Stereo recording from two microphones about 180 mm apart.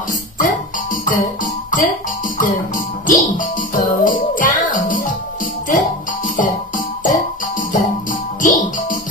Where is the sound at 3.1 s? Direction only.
50° left (ahead or behind).